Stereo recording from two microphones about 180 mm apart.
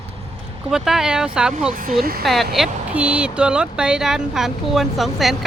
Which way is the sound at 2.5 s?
5° right (ahead or behind).